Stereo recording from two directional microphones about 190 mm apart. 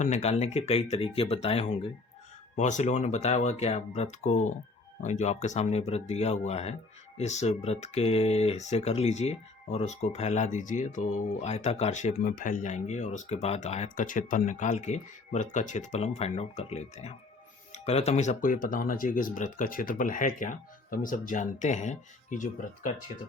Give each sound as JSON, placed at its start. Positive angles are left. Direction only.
{"t": 0.0, "sound": "speech", "side_deg": 35}